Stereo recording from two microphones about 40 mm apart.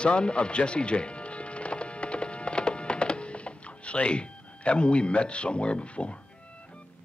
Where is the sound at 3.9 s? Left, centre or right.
Left.